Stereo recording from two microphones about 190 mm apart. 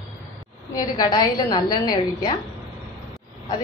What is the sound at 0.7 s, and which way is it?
A woman's voice, 20° left (ahead or behind).